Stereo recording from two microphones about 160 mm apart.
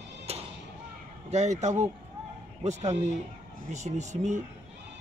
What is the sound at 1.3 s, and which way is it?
Speech, 45° right (ahead or behind).